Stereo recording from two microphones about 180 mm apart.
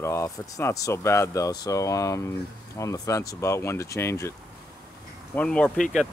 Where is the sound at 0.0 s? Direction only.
15° left (ahead or behind).